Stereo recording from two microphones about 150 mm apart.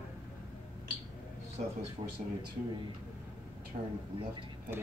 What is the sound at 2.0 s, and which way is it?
Speech, 30° right (ahead or behind).